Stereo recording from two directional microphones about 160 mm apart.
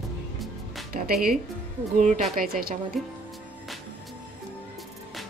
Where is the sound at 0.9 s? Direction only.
65° right (ahead or behind).